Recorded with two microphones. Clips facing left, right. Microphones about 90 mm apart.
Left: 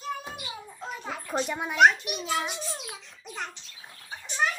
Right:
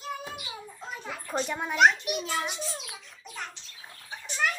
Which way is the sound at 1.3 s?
5° left (ahead or behind).